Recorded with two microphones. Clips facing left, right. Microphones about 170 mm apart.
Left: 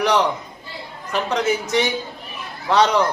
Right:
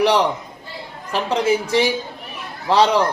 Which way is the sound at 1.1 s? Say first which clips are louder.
Right 2 dB; 30° right (ahead or behind).